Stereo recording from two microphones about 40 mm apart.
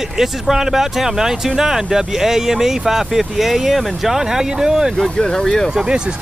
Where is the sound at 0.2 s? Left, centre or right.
Centre.